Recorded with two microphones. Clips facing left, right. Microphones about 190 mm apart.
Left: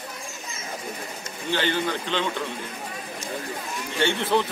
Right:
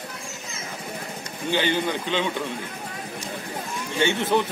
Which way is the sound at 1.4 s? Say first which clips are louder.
Right 2 dB; 15° right (ahead or behind).